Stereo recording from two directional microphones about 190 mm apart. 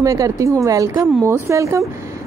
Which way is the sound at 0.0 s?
15° right (ahead or behind).